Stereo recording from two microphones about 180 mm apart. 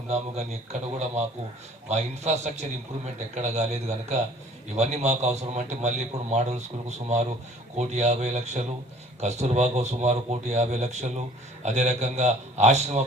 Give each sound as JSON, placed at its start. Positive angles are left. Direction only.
{"t": 0.1, "sound": "a man's voice", "side_deg": -35}